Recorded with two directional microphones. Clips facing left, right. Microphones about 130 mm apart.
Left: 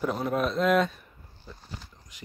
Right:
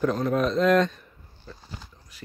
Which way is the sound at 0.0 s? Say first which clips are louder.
Right 4 dB; 10° left (ahead or behind).